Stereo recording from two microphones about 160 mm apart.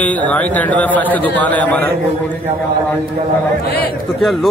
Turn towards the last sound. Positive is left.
turn(degrees=0)  # may be behind; listen again after turning